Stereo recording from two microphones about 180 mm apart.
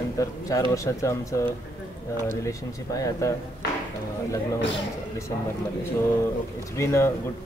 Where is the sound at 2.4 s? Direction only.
15° left (ahead or behind).